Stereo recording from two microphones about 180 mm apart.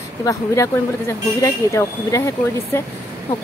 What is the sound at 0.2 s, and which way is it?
Speech, 15° left (ahead or behind).